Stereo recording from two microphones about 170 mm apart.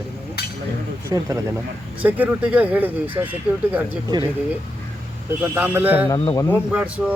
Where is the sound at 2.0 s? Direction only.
10° right (ahead or behind).